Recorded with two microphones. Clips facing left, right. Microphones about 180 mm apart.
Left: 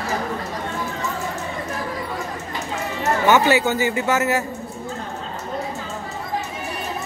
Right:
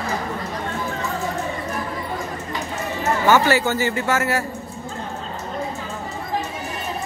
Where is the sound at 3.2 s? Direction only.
20° left (ahead or behind).